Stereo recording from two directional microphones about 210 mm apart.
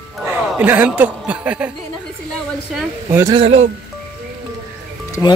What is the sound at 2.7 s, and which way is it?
Speech, 5° right (ahead or behind).